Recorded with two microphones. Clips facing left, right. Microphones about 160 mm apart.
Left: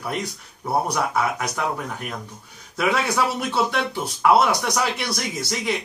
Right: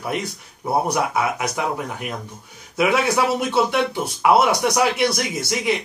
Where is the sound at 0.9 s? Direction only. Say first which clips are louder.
Right 2 dB; 10° right (ahead or behind).